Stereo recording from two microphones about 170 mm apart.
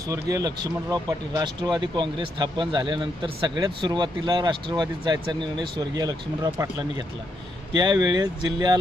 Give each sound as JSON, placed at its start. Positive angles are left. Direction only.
{"t": 0.1, "sound": "speech", "side_deg": -20}